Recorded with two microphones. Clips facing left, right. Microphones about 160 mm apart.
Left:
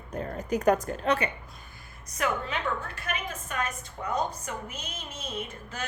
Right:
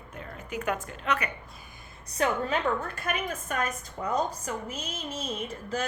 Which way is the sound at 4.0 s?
30° right (ahead or behind).